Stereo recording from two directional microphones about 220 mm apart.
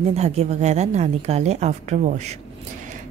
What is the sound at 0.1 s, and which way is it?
A woman's voice, 30° right (ahead or behind).